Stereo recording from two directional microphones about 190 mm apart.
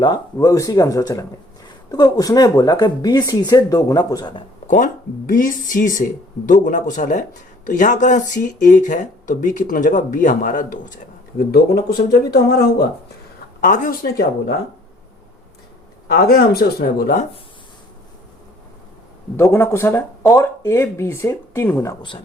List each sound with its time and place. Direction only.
0.0 s speech: 20° left (ahead or behind)
4.6 s speech: 45° left (ahead or behind)
11.3 s speech: 55° left (ahead or behind)
13.6 s speech: 45° left (ahead or behind)
16.0 s speech: 55° left (ahead or behind)
19.4 s speech: 15° left (ahead or behind)